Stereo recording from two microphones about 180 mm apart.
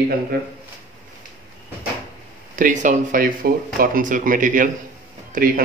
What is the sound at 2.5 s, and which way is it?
Speech, 45° right (ahead or behind).